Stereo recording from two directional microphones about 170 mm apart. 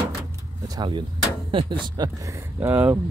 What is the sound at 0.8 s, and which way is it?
Speech, 30° right (ahead or behind).